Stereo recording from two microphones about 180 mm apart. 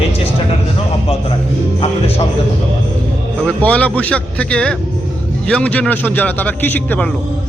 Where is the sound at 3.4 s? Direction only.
5° left (ahead or behind).